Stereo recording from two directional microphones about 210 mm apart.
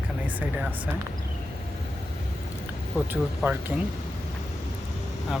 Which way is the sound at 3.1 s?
10° right (ahead or behind).